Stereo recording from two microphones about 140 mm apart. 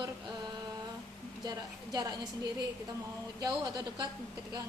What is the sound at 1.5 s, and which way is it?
Speech, 30° right (ahead or behind).